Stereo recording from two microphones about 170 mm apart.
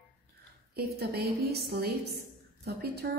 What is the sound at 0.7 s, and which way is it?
Speech, 70° right (ahead or behind).